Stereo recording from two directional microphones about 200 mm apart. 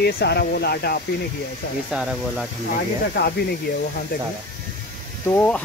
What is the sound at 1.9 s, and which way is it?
Speech, 5° right (ahead or behind).